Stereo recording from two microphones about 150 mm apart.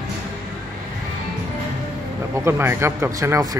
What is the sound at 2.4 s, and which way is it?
A man's voice, 15° right (ahead or behind).